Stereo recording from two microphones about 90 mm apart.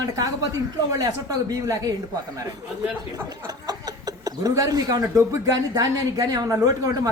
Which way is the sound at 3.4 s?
45° right (ahead or behind).